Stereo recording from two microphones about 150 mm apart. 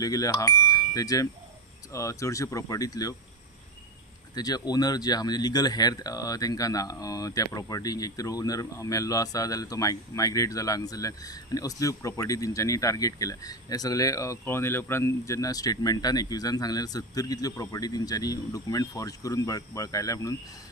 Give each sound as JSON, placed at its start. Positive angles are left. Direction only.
{"t": 0.0, "sound": "speech", "side_deg": 25}
{"t": 4.4, "sound": "speech", "side_deg": 25}